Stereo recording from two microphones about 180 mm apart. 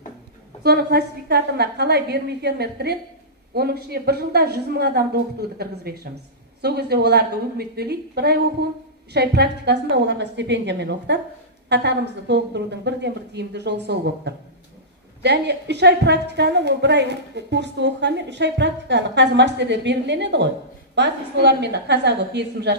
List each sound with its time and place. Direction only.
0.7 s a woman's voice: 60° right (ahead or behind)